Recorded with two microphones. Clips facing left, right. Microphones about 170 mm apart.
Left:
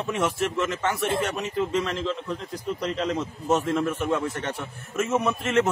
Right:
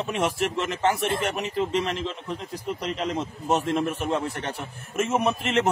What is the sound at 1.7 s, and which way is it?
Speech, 20° right (ahead or behind).